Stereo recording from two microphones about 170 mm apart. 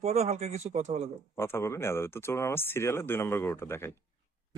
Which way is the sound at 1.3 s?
15° left (ahead or behind).